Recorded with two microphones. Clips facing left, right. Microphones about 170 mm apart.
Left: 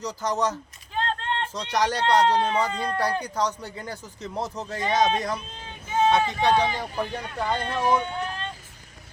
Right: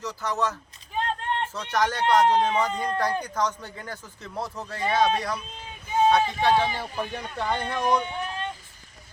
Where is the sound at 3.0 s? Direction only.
10° left (ahead or behind).